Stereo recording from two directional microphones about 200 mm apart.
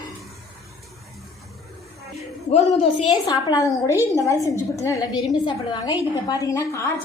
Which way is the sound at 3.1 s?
20° left (ahead or behind).